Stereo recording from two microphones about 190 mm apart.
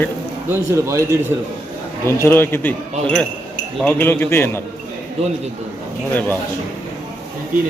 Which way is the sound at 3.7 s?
10° left (ahead or behind).